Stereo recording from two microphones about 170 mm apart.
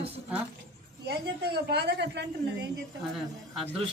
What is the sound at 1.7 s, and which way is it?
Speech, 80° right.